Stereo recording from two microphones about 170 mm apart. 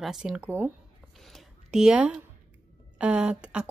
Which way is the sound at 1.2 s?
Centre (ahead or behind).